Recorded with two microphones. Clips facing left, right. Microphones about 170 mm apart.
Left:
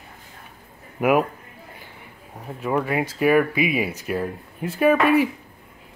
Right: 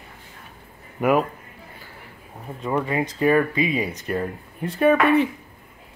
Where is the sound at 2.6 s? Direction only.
5° left (ahead or behind).